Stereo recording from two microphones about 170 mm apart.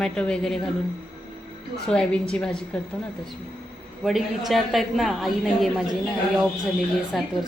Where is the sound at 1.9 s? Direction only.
5° left (ahead or behind).